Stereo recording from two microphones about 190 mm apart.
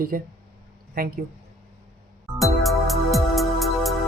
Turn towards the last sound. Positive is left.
turn(degrees=0)  # may be behind; listen again after turning